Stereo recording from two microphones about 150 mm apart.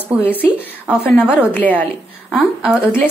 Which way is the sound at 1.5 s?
10° left (ahead or behind).